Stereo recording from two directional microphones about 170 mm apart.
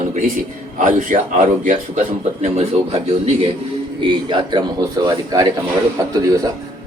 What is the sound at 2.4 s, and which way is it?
A man's voice, 40° right (ahead or behind).